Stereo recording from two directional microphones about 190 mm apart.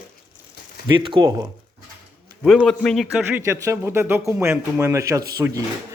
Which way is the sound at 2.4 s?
Centre (ahead or behind).